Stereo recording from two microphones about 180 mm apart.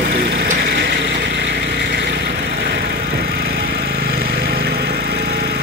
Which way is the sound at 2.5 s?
65° right (ahead or behind).